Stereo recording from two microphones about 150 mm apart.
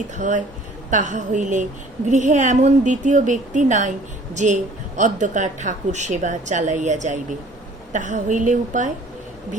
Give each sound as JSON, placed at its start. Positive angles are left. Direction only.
{"t": 0.2, "sound": "speech", "side_deg": -55}